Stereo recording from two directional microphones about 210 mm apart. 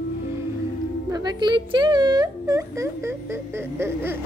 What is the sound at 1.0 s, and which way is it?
Speech, 20° right (ahead or behind).